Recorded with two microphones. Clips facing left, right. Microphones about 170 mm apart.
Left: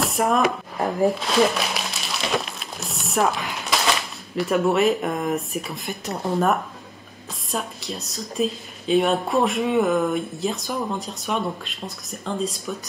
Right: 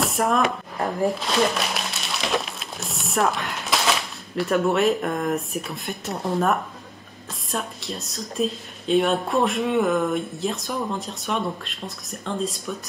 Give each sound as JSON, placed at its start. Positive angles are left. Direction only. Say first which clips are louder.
{"t": 0.0, "sound": "a woman's voice", "louder": "left 1 dB", "side_deg": 0}